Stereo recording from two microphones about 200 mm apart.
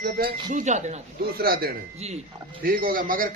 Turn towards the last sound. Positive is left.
turn(degrees=-45)  # may be behind; listen again after turning